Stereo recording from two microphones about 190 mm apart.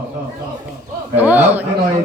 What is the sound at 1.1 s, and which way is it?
Speech, 10° right (ahead or behind).